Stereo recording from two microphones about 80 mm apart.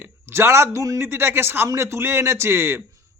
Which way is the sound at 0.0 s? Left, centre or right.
Right.